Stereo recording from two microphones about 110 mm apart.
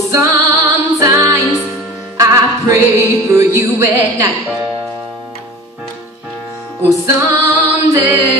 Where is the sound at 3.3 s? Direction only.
25° right (ahead or behind).